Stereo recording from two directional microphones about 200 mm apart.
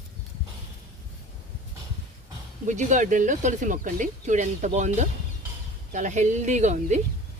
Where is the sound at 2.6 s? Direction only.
40° right (ahead or behind).